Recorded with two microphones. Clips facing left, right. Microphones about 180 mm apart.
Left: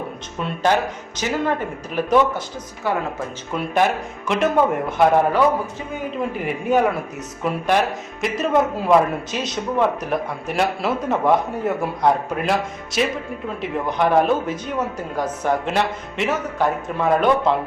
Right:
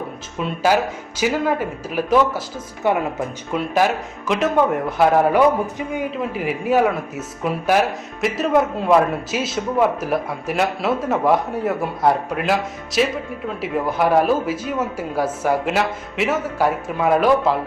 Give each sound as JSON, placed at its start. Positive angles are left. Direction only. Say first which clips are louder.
{"t": 0.3, "sound": "a man's voice", "louder": "right 1 dB", "side_deg": -5}
{"t": 2.8, "sound": "speech", "louder": "right 4 dB", "side_deg": -20}
{"t": 3.5, "sound": "a man's voice", "louder": "right 1 dB", "side_deg": 0}
{"t": 6.3, "sound": "a man's voice", "louder": "right 1 dB", "side_deg": -5}